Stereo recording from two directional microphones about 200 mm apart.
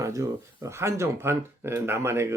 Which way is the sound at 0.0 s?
15° right (ahead or behind).